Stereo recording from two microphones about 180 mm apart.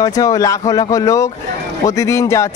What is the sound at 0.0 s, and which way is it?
Speech, 20° left (ahead or behind).